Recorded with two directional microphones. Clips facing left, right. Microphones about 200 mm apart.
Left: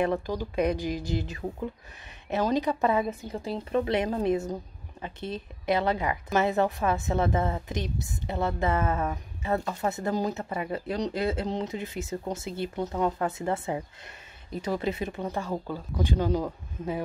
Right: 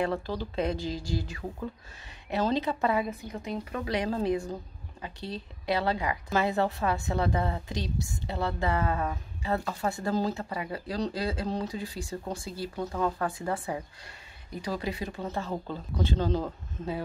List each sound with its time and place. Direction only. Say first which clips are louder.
0.0 s a woman's voice: left 3 dB; 15° left (ahead or behind)